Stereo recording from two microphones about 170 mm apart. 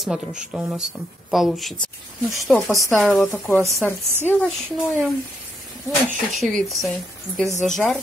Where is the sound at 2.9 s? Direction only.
5° left (ahead or behind).